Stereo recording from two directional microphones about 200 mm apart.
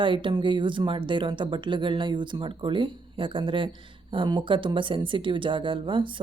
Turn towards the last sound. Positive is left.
turn(degrees=-25)  # may be behind; listen again after turning